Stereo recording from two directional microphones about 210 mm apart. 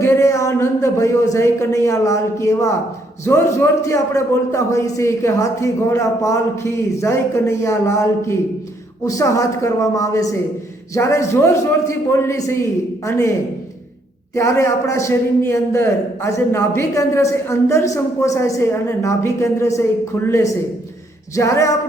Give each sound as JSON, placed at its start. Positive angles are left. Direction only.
{"t": 0.0, "sound": "a man's voice", "side_deg": 10}
{"t": 14.3, "sound": "a man's voice", "side_deg": 15}